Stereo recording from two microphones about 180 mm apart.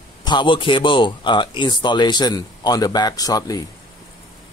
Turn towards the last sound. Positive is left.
turn(degrees=20)  # may be behind; listen again after turning